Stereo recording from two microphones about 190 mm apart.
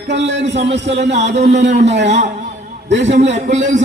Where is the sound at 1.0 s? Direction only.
35° right (ahead or behind).